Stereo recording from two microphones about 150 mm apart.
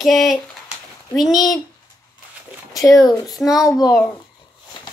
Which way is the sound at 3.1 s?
Centre (ahead or behind).